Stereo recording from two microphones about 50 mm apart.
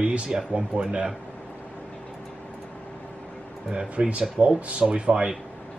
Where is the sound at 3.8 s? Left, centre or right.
Right.